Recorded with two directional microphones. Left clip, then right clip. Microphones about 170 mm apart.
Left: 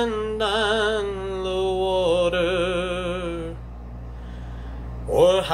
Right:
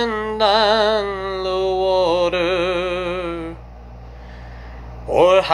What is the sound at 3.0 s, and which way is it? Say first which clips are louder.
Music: right 4 dB; 5° right (ahead or behind).